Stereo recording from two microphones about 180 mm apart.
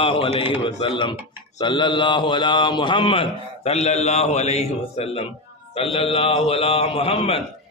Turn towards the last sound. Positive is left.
turn(degrees=35)  # may be behind; listen again after turning